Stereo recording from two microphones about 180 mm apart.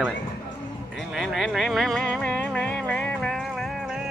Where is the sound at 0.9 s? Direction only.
Centre (ahead or behind).